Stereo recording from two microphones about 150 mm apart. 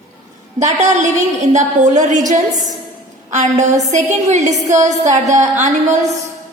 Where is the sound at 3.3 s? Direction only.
50° right (ahead or behind).